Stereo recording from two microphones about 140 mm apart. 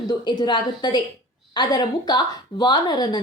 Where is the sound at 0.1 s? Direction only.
30° left (ahead or behind).